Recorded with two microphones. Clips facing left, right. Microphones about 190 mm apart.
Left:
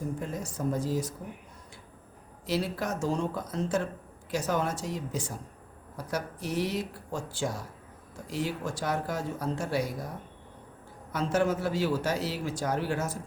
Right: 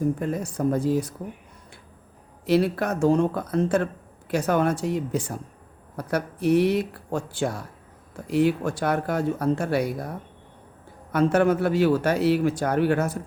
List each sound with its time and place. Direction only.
0.2 s speech: 60° right (ahead or behind)
2.5 s speech: 60° right (ahead or behind)
11.1 s speech: 60° right (ahead or behind)